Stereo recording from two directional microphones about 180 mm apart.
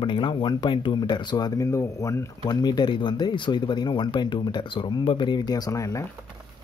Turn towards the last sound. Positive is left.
turn(degrees=15)  # may be behind; listen again after turning